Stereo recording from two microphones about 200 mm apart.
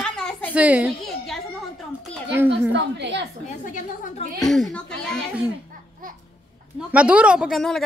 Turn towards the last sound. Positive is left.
turn(degrees=0)  # may be behind; listen again after turning